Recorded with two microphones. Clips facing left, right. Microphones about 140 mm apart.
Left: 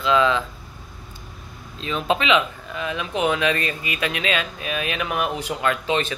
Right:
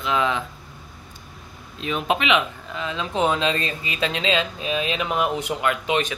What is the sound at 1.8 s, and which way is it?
Speech, 15° right (ahead or behind).